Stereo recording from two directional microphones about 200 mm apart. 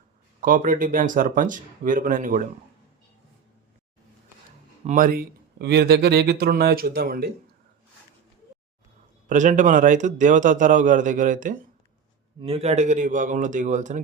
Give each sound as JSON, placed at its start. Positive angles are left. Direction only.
{"t": 0.4, "sound": "a man's voice", "side_deg": -45}
{"t": 4.9, "sound": "speech", "side_deg": -45}
{"t": 9.3, "sound": "a man's voice", "side_deg": -40}
{"t": 12.4, "sound": "a man's voice", "side_deg": -30}